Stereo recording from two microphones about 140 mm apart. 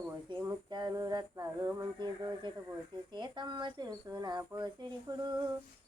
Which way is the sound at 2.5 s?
35° right (ahead or behind).